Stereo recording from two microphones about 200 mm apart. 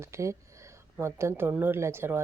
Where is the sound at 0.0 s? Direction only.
15° right (ahead or behind).